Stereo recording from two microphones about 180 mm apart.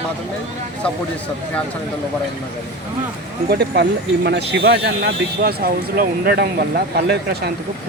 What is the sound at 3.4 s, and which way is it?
Speech, 65° right (ahead or behind).